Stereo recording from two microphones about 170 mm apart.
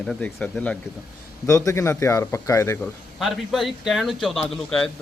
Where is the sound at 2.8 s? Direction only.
Centre (ahead or behind).